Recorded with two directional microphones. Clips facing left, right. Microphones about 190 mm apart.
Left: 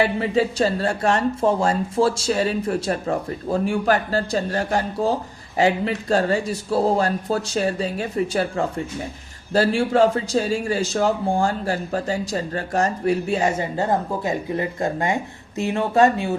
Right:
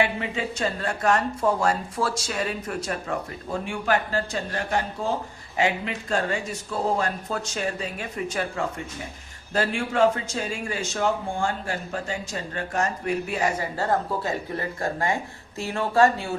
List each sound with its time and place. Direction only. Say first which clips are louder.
0.0 s a man's voice: left 6 dB; 35° left (ahead or behind); by 16.4 s 20° left (ahead or behind)